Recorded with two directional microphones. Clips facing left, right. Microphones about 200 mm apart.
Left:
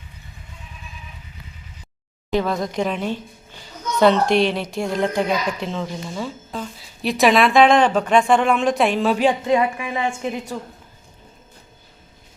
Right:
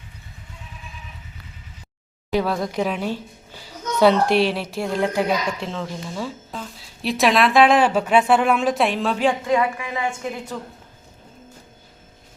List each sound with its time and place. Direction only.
2.3 s a woman's voice: 10° right (ahead or behind)
9.1 s a woman's voice: 20° left (ahead or behind)